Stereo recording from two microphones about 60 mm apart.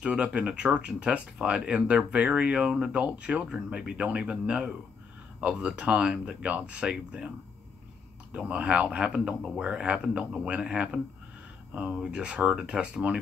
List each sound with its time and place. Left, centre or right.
0.0 s speech: centre
8.5 s speech: centre